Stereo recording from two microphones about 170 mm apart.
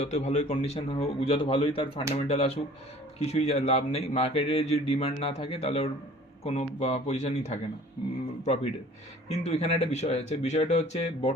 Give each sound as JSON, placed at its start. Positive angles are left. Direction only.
{"t": 0.0, "sound": "speech", "side_deg": 40}
{"t": 9.4, "sound": "speech", "side_deg": 40}